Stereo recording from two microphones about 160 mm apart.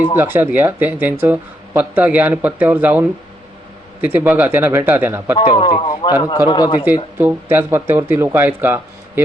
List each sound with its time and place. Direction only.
0.2 s speech: 15° right (ahead or behind)
5.5 s a man's voice: 35° left (ahead or behind)
7.2 s speech: 15° right (ahead or behind)